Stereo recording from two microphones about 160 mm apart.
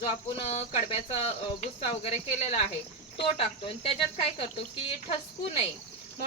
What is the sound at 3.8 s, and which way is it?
Speech, 35° left (ahead or behind).